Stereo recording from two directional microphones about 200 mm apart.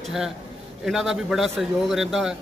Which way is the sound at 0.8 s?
Centre (ahead or behind).